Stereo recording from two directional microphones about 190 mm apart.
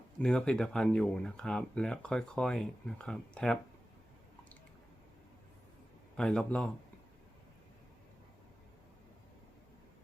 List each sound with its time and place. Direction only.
0.2 s speech: 5° left (ahead or behind)
6.1 s speech: 5° left (ahead or behind)